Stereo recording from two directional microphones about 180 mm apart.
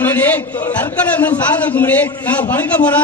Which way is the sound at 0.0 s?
10° left (ahead or behind).